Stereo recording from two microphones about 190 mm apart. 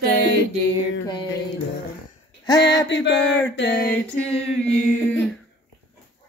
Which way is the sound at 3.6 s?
55° left (ahead or behind).